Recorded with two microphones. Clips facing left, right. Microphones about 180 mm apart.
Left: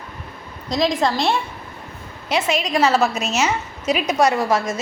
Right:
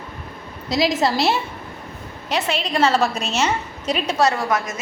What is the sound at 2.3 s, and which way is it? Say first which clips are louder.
A woman's voice: left 2 dB; 10° left (ahead or behind).